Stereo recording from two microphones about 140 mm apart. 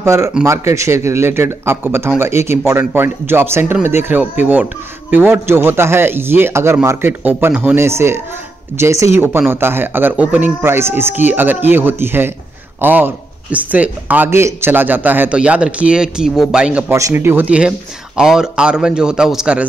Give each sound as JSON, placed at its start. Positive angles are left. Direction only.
{"t": 0.0, "sound": "speech", "side_deg": -20}